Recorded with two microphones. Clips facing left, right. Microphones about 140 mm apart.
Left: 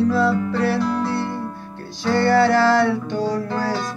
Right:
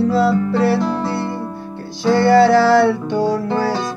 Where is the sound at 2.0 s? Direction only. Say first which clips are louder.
Right 5 dB; 10° right (ahead or behind).